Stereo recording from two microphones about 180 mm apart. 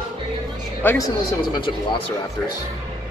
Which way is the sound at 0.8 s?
20° left (ahead or behind).